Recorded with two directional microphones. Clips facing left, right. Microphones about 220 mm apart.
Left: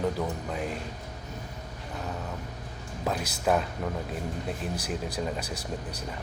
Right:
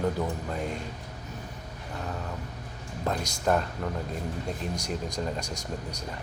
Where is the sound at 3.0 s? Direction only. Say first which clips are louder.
Even; 5° left (ahead or behind).